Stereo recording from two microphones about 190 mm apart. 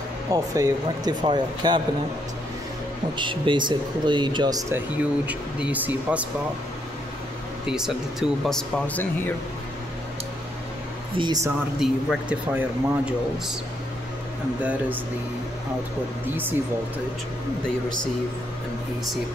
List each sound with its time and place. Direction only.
0.3 s speech: 20° right (ahead or behind)
3.2 s speech: 25° right (ahead or behind); by 6.2 s 10° right (ahead or behind)
7.6 s speech: 5° right (ahead or behind)
11.1 s speech: 25° right (ahead or behind)
11.8 s speech: 5° right (ahead or behind)
14.6 s speech: 10° right (ahead or behind)